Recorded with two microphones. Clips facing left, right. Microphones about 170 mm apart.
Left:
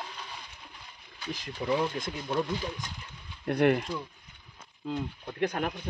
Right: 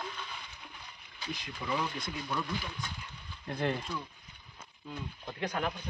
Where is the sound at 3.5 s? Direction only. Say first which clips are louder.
Left 9 dB; 70° left (ahead or behind).